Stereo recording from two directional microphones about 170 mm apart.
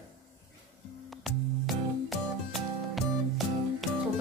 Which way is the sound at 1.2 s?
Centre (ahead or behind).